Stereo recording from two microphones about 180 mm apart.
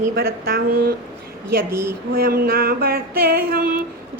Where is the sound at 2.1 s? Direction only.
55° right (ahead or behind).